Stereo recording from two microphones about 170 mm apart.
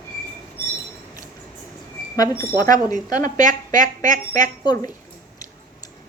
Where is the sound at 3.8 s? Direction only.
50° right (ahead or behind).